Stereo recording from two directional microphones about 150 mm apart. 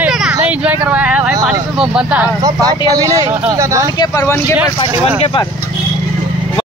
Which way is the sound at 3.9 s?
25° left (ahead or behind).